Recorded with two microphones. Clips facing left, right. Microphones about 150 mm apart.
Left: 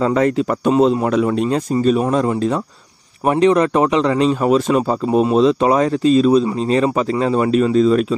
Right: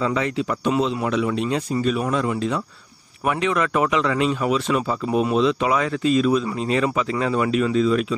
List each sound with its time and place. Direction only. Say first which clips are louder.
0.0 s a man's voice: left 7 dB; 45° left (ahead or behind)